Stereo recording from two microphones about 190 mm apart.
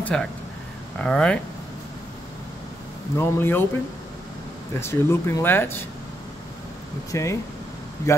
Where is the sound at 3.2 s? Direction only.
10° left (ahead or behind).